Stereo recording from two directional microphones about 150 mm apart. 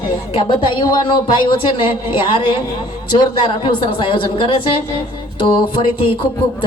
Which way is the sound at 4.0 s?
35° left (ahead or behind).